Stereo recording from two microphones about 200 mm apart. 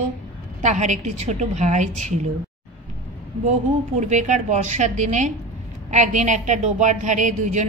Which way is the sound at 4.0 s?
35° right (ahead or behind).